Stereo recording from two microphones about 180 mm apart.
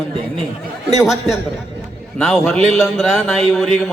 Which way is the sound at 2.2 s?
5° left (ahead or behind).